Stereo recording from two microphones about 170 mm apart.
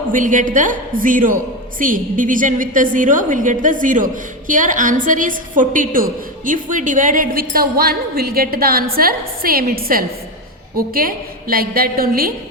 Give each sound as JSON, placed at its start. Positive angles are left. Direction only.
{"t": 0.1, "sound": "a woman's voice", "side_deg": -50}